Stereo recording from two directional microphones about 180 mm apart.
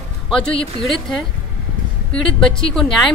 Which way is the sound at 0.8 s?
Centre (ahead or behind).